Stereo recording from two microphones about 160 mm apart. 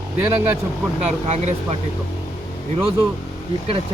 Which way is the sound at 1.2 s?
45° right (ahead or behind).